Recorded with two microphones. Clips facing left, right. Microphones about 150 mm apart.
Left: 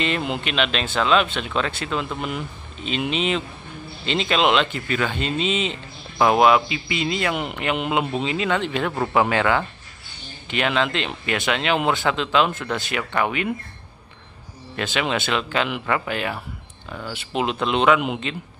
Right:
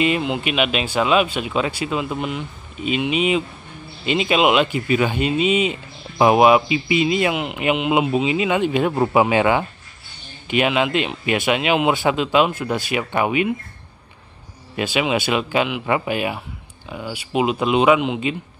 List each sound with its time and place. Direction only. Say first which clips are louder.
0.0 s speech: right 4 dB; 5° right (ahead or behind)
14.8 s speech: right 4 dB; 10° right (ahead or behind)